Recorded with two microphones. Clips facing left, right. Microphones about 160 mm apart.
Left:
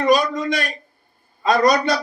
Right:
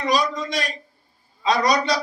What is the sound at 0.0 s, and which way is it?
A man's voice, 55° left (ahead or behind).